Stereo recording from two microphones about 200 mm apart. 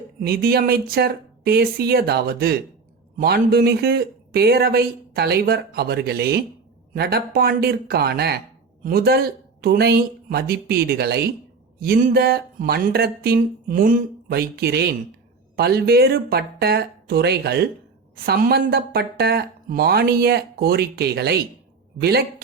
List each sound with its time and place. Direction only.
0.3 s speech: 50° right (ahead or behind)